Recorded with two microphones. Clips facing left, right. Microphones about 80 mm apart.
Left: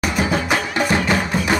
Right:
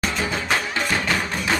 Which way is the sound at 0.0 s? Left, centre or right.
Centre.